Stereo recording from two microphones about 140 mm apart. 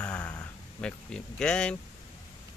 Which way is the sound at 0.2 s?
25° left (ahead or behind).